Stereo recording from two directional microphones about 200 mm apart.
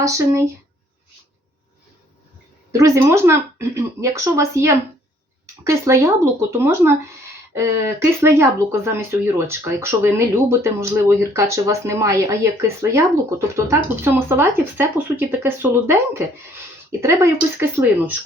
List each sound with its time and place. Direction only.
0.0 s speech: 15° right (ahead or behind)
2.7 s speech: 15° right (ahead or behind)